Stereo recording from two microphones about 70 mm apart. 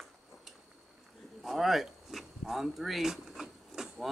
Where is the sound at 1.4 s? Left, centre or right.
Centre.